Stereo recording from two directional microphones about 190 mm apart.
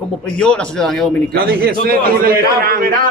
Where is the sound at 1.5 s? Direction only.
50° right (ahead or behind).